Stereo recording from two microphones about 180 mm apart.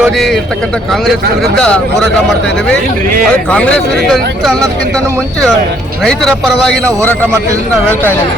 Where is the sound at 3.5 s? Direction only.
5° left (ahead or behind).